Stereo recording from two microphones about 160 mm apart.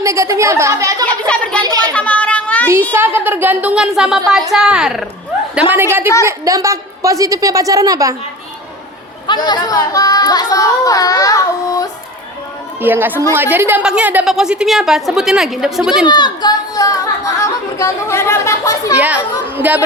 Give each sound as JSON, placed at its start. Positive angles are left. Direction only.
{"t": 0.0, "sound": "a woman's voice", "side_deg": -20}
{"t": 1.3, "sound": "speech", "side_deg": 5}
{"t": 1.6, "sound": "a sound", "side_deg": -25}
{"t": 1.9, "sound": "a sound", "side_deg": 10}
{"t": 2.9, "sound": "a woman's voice", "side_deg": -10}
{"t": 9.2, "sound": "speech", "side_deg": 30}
{"t": 12.8, "sound": "a woman's voice", "side_deg": -15}
{"t": 16.0, "sound": "speech", "side_deg": 25}
{"t": 18.9, "sound": "a woman's voice", "side_deg": -10}